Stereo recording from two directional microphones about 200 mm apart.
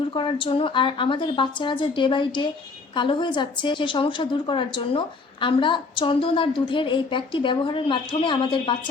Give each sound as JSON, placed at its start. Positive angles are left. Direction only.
{"t": 0.1, "sound": "a woman's voice", "side_deg": 25}